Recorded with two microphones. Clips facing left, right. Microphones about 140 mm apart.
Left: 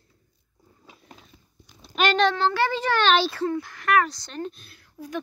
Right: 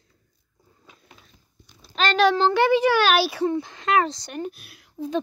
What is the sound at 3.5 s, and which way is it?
Speech, 20° right (ahead or behind).